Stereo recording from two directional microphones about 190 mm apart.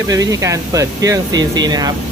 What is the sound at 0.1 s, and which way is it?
Speech, 15° right (ahead or behind).